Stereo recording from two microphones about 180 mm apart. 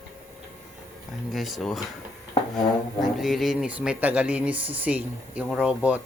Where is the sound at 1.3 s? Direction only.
Centre (ahead or behind).